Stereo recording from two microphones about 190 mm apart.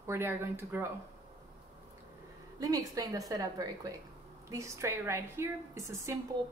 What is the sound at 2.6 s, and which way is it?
A woman's voice, 20° right (ahead or behind).